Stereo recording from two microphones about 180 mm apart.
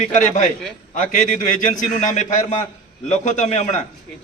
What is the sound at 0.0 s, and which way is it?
A man's voice, 40° left (ahead or behind).